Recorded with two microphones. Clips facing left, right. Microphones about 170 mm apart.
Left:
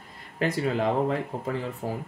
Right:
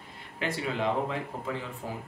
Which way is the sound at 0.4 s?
40° left (ahead or behind).